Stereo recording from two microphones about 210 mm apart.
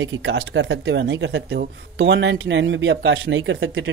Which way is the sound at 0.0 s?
60° right (ahead or behind).